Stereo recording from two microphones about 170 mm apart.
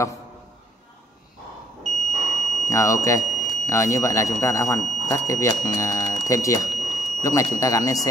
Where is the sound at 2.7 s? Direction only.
15° left (ahead or behind).